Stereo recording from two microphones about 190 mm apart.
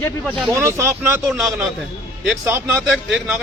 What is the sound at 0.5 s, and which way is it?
A man's voice, 15° right (ahead or behind).